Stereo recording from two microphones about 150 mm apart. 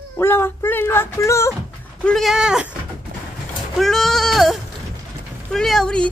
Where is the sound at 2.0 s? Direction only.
Centre (ahead or behind).